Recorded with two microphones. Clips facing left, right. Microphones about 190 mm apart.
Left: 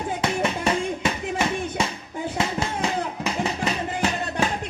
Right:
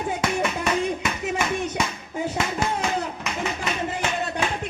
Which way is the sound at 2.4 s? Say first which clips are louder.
Left 2 dB; 30° left (ahead or behind).